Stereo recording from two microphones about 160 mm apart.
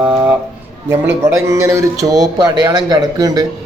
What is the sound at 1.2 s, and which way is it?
A man's voice, 20° right (ahead or behind).